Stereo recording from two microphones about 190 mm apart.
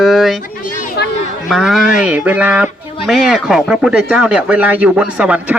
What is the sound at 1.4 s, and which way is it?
Speech, centre (ahead or behind).